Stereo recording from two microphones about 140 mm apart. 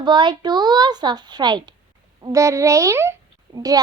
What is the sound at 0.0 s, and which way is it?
A child's voice, 35° right (ahead or behind).